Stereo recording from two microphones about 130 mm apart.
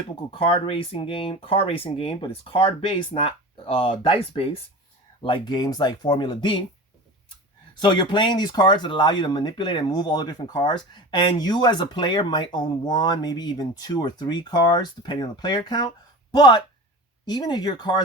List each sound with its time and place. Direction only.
0.2 s speech: 40° left (ahead or behind)
7.8 s speech: 35° left (ahead or behind)